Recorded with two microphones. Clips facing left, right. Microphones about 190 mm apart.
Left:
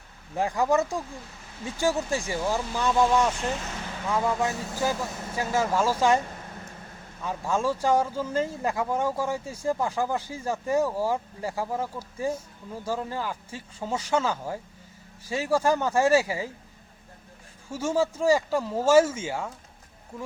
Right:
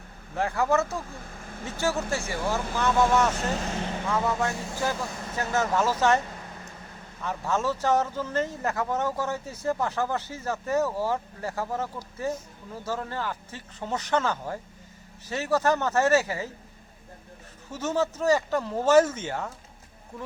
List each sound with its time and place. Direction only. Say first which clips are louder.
0.3 s speech: left 1 dB; 15° left (ahead or behind)
1.2 s vehicle: right 4 dB; 50° right (ahead or behind)
1.8 s speech: left 2 dB; 15° left (ahead or behind)
7.3 s speech: left 1 dB; 10° left (ahead or behind)
17.7 s speech: left 2 dB; 10° left (ahead or behind)